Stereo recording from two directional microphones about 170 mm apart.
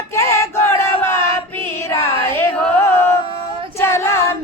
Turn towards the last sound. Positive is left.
turn(degrees=15)  # may be behind; listen again after turning